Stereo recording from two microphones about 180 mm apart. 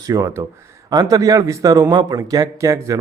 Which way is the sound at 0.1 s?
15° right (ahead or behind).